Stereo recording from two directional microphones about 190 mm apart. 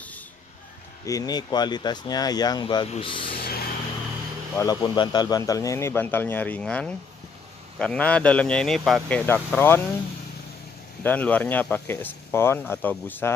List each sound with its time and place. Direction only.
1.0 s speech: 20° left (ahead or behind)
3.3 s a sound: 55° left (ahead or behind)
4.6 s speech: 20° left (ahead or behind)
11.1 s speech: 10° left (ahead or behind)